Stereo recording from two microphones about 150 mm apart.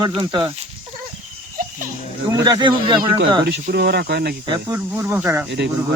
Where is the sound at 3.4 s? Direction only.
90° right.